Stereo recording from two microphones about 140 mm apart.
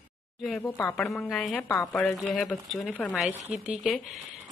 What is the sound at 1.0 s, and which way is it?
A woman's voice, centre (ahead or behind).